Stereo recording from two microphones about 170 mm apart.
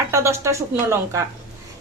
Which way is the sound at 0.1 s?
15° right (ahead or behind).